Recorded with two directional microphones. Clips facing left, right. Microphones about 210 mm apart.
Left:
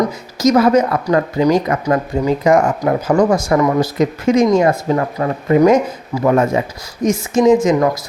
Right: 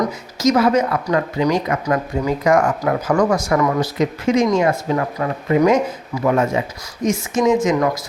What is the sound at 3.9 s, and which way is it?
Speech, 45° left (ahead or behind).